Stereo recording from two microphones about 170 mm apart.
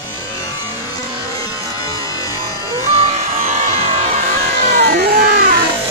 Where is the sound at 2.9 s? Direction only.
40° right (ahead or behind).